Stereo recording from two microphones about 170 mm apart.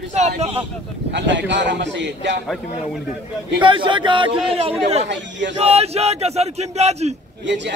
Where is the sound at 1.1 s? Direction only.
90° right.